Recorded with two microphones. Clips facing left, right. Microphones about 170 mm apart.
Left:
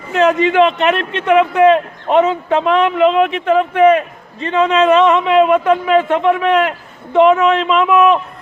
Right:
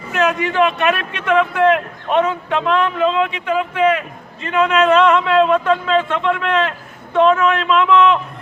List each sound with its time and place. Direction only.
0.2 s a man's voice: 20° left (ahead or behind)